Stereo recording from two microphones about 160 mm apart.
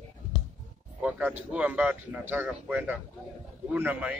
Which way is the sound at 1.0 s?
10° right (ahead or behind).